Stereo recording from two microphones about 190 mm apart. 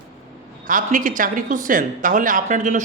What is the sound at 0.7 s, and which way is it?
A man's voice, 45° right (ahead or behind).